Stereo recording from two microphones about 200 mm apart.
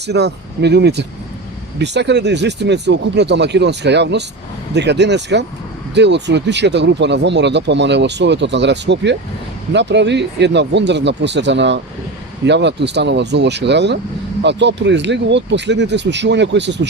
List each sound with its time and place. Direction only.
0.1 s speech: 55° right (ahead or behind)